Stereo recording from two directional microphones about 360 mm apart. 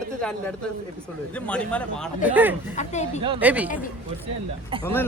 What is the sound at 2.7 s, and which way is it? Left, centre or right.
Speech, centre.